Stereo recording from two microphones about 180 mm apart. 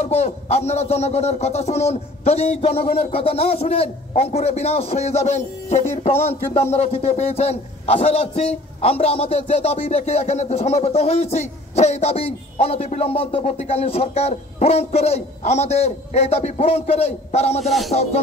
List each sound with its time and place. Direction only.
0.0 s speech: 35° left (ahead or behind)
17.6 s music: centre (ahead or behind)